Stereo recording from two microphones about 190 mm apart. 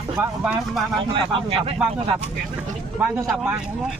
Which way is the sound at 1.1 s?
30° right (ahead or behind).